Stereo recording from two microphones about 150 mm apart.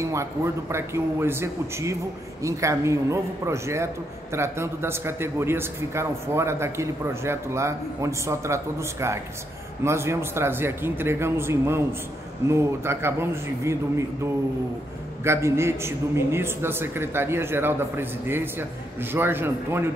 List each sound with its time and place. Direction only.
0.0 s a man's voice: 20° right (ahead or behind)
15.2 s a man's voice: 15° right (ahead or behind)